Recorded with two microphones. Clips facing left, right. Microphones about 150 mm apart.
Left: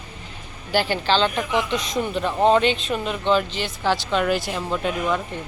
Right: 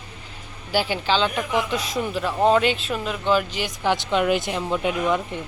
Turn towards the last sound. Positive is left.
turn(degrees=-15)  # may be behind; listen again after turning